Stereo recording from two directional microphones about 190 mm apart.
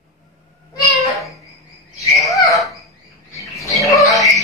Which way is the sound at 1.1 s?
Centre (ahead or behind).